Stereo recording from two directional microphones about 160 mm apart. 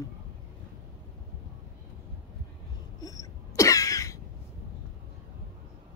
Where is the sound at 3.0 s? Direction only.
20° left (ahead or behind).